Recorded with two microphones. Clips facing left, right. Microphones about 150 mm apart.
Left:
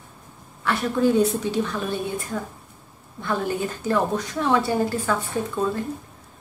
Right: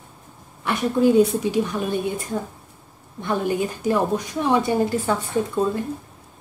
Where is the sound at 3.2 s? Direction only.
20° right (ahead or behind).